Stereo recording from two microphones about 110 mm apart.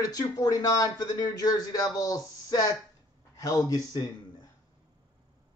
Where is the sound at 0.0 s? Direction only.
35° left (ahead or behind).